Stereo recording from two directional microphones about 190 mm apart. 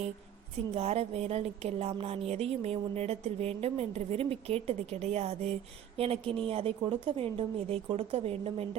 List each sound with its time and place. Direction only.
0.7 s a woman's voice: 35° right (ahead or behind)